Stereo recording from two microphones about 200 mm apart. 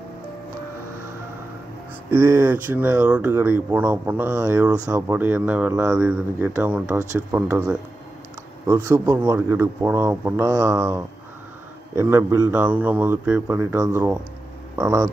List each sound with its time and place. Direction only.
2.0 s speech: 15° right (ahead or behind)